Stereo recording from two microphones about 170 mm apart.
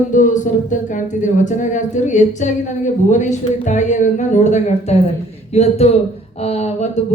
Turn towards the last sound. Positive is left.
turn(degrees=40)  # may be behind; listen again after turning